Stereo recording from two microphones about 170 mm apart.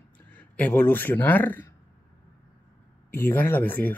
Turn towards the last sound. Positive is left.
turn(degrees=10)  # may be behind; listen again after turning